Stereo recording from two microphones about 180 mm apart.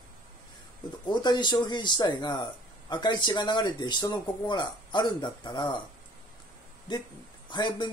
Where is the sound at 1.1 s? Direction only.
25° left (ahead or behind).